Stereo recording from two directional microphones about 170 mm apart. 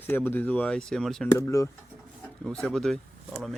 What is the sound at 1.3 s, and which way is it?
Speech, 20° left (ahead or behind).